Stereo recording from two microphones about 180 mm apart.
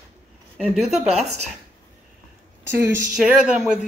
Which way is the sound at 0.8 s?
40° right (ahead or behind).